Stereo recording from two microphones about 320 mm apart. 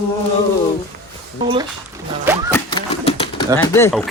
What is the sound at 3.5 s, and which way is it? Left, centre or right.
Speech, centre.